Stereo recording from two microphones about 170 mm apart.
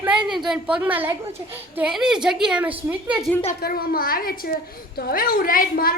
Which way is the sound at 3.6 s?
65° left (ahead or behind).